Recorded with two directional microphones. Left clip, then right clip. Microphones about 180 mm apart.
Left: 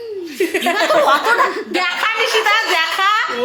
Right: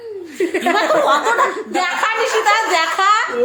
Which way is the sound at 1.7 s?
15° left (ahead or behind).